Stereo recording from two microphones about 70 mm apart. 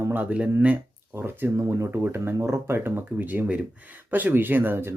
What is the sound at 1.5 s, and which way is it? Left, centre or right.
Speech, right.